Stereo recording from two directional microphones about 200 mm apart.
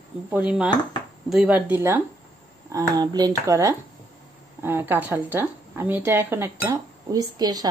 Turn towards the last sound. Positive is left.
turn(degrees=-20)  # may be behind; listen again after turning